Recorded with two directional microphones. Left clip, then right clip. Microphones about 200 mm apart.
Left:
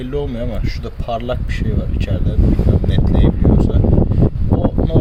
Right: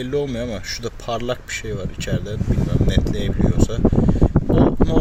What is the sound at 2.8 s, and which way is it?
Speech, 25° right (ahead or behind).